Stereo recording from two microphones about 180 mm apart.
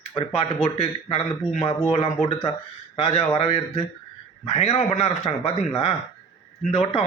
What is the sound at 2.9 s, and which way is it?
Speech, 35° left (ahead or behind).